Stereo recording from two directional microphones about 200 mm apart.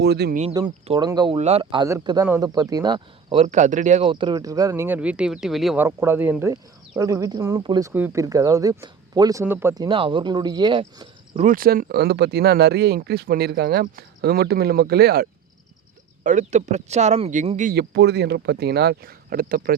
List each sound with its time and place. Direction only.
0.0 s speech: 55° right (ahead or behind)
0.5 s speech: 20° right (ahead or behind)
1.4 s speech: 30° right (ahead or behind)
3.4 s speech: 35° right (ahead or behind)
4.1 s speech: 20° right (ahead or behind)
11.4 s speech: 45° right (ahead or behind)
16.2 s speech: 35° right (ahead or behind)
17.7 s speech: 55° right (ahead or behind)